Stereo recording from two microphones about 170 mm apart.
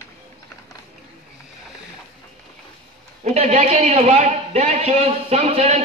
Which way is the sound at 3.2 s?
40° right (ahead or behind).